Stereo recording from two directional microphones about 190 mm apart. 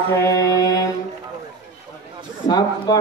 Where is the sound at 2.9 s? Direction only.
20° left (ahead or behind).